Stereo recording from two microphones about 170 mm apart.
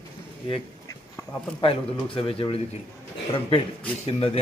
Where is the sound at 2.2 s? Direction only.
30° left (ahead or behind).